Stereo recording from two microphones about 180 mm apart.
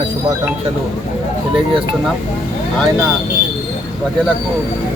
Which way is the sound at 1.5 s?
30° right (ahead or behind).